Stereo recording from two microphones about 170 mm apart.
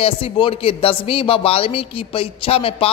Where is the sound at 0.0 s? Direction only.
35° left (ahead or behind).